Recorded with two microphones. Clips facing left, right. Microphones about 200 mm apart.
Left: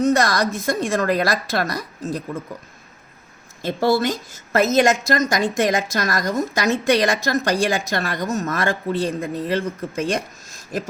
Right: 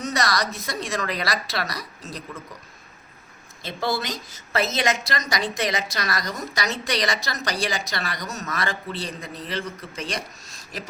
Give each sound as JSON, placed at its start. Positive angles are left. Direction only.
{"t": 0.0, "sound": "a woman's voice", "side_deg": 50}
{"t": 3.6, "sound": "a woman's voice", "side_deg": 50}